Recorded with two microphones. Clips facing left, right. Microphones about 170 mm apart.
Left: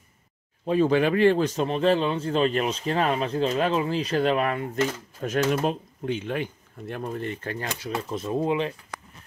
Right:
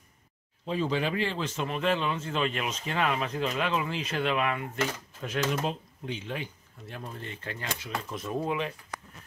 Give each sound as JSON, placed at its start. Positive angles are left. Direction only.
{"t": 0.7, "sound": "speech", "side_deg": 55}
{"t": 1.4, "sound": "speech", "side_deg": 35}
{"t": 7.8, "sound": "speech", "side_deg": 30}